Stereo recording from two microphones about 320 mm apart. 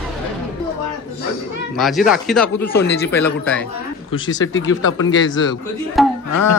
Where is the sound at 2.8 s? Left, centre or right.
Left.